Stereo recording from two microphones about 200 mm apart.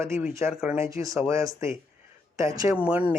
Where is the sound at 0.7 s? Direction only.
15° right (ahead or behind).